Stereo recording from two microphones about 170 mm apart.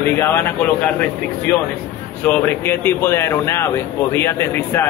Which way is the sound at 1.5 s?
10° left (ahead or behind).